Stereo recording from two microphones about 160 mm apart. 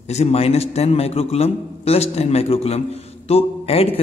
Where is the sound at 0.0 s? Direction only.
40° left (ahead or behind).